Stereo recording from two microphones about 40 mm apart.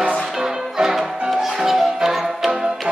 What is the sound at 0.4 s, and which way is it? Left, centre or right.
Music, centre.